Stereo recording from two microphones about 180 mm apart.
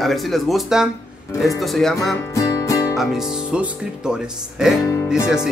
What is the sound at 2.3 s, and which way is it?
Music, 20° left (ahead or behind).